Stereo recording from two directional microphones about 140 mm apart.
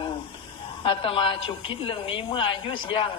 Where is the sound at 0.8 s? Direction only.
35° left (ahead or behind).